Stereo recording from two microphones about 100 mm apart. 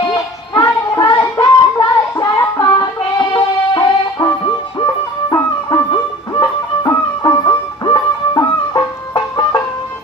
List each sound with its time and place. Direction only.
0.1 s music: 40° left (ahead or behind)
5.3 s music: 45° left (ahead or behind)